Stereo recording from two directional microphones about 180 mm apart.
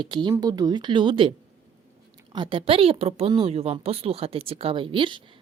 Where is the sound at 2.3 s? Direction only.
30° right (ahead or behind).